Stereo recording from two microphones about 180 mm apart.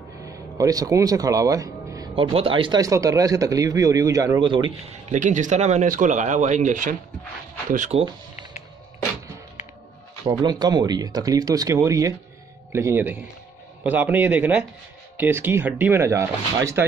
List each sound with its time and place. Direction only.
0.2 s speech: 20° right (ahead or behind)
2.1 s speech: 30° right (ahead or behind)
5.1 s speech: 45° right (ahead or behind)
10.2 s speech: 20° right (ahead or behind)